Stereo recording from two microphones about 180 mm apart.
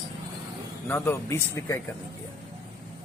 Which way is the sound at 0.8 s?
10° left (ahead or behind).